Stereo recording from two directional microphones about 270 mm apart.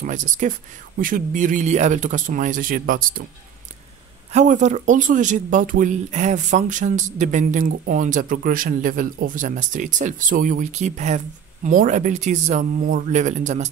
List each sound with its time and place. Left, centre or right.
0.0 s speech: right
4.3 s speech: right